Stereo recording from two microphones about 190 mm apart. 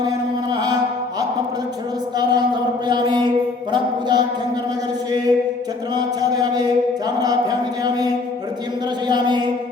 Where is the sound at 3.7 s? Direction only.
20° right (ahead or behind).